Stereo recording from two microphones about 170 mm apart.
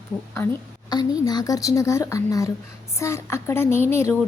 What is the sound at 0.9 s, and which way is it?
A woman's voice, 25° left (ahead or behind).